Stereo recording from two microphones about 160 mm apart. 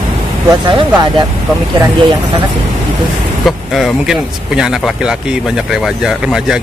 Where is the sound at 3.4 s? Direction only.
Centre (ahead or behind).